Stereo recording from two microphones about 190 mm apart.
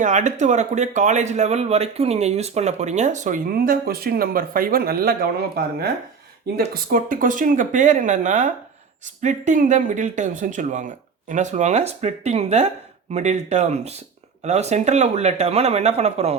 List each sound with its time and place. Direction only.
0.0 s speech: 40° right (ahead or behind)